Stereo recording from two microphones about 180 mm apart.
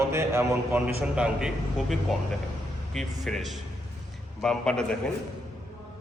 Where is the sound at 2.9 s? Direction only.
Centre (ahead or behind).